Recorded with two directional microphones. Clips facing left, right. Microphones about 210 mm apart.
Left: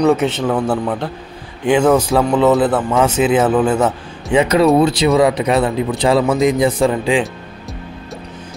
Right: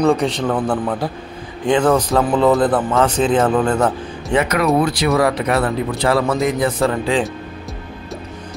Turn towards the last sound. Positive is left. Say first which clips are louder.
# left 3 dB
turn(degrees=15)  # may be behind; listen again after turning